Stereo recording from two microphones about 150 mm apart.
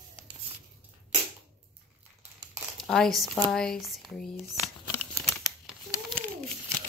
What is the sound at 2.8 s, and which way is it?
Speech, 5° left (ahead or behind).